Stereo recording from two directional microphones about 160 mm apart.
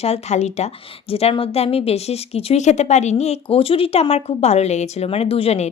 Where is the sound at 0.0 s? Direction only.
40° left (ahead or behind).